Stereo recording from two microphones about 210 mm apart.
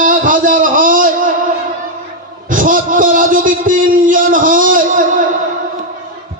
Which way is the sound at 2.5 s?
40° right (ahead or behind).